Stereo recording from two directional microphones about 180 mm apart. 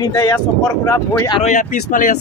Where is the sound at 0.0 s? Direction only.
15° left (ahead or behind).